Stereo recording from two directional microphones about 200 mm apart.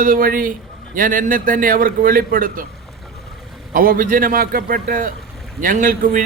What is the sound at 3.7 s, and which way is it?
A man's voice, 45° right (ahead or behind).